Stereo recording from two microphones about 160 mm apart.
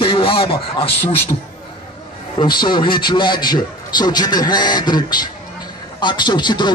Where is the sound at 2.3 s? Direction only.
30° left (ahead or behind).